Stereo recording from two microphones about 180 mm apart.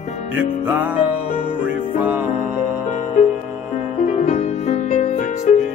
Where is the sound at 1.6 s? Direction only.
10° right (ahead or behind).